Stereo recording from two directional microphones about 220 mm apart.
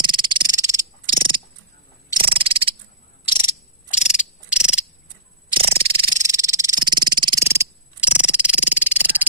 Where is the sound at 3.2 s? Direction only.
20° left (ahead or behind).